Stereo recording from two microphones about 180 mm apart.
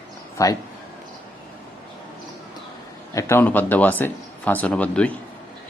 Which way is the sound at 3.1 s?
15° left (ahead or behind).